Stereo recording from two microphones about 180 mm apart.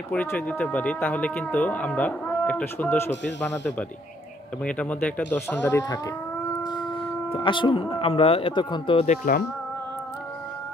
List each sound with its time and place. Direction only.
0.1 s speech: 10° left (ahead or behind)
7.3 s speech: 25° left (ahead or behind); by 9.4 s 45° left (ahead or behind)